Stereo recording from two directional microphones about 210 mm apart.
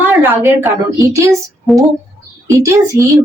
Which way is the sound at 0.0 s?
10° right (ahead or behind).